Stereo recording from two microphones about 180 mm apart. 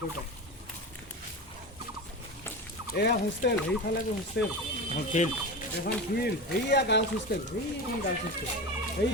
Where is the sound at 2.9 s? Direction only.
65° left (ahead or behind).